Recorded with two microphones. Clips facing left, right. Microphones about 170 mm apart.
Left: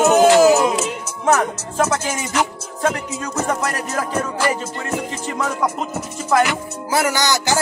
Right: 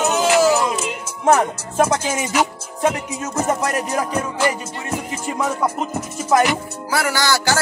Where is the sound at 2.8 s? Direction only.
15° right (ahead or behind).